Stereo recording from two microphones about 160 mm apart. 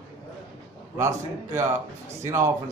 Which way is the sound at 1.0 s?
15° right (ahead or behind).